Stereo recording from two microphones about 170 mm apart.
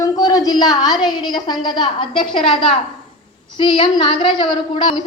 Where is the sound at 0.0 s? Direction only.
20° left (ahead or behind).